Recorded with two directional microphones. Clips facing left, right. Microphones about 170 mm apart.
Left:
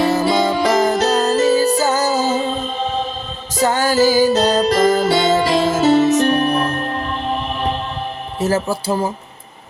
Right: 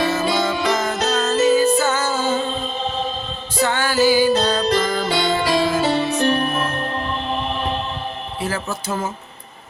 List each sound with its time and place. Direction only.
0.4 s music: 35° left (ahead or behind)
8.4 s speech: 40° left (ahead or behind)